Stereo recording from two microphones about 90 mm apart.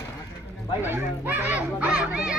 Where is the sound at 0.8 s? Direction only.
25° right (ahead or behind).